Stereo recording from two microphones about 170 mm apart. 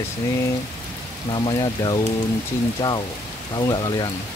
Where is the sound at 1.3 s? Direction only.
25° left (ahead or behind).